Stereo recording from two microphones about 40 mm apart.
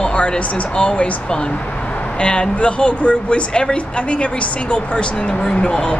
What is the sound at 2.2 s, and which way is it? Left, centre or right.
Speech, left.